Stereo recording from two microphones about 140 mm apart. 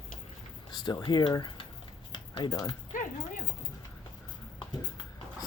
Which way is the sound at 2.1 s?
35° left (ahead or behind).